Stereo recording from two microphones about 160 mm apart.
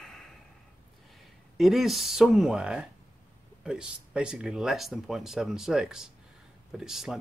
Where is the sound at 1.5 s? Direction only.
Centre (ahead or behind).